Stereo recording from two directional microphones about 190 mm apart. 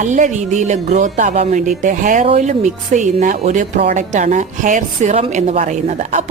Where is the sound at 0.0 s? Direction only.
40° right (ahead or behind).